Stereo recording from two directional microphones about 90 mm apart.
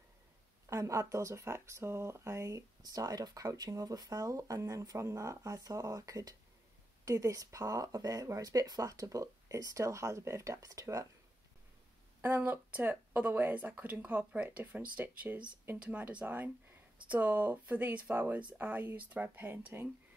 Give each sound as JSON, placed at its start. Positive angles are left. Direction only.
{"t": 0.7, "sound": "speech", "side_deg": -35}
{"t": 2.8, "sound": "speech", "side_deg": -45}
{"t": 12.2, "sound": "speech", "side_deg": -20}